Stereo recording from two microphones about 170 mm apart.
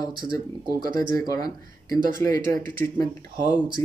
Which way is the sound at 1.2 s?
20° left (ahead or behind).